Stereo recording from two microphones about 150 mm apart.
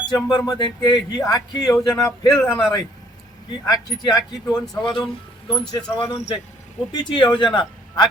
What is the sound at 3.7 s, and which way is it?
A man's voice, 25° left (ahead or behind).